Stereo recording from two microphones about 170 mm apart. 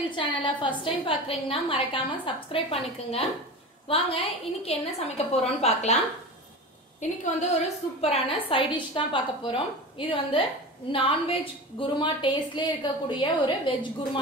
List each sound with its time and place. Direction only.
0.1 s a woman's voice: 30° left (ahead or behind)
7.0 s a woman's voice: 45° left (ahead or behind); by 13.7 s 30° left (ahead or behind)